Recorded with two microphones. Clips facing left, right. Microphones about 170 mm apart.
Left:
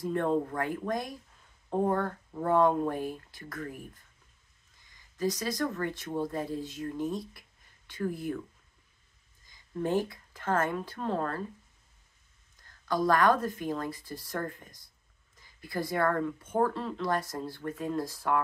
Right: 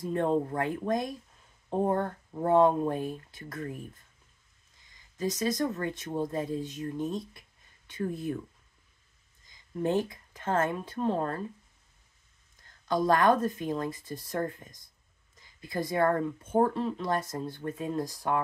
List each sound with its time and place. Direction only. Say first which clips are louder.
0.1 s speech: right 2 dB; 20° right (ahead or behind)
5.1 s speech: right 1 dB; 20° right (ahead or behind)
9.8 s speech: right 1 dB; 20° right (ahead or behind)
12.8 s speech: right 1 dB; 20° right (ahead or behind)
16.7 s speech: right 1 dB; 15° right (ahead or behind)